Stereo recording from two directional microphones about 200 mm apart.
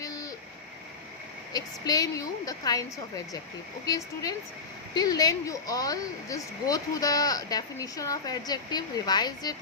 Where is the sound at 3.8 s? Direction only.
15° left (ahead or behind).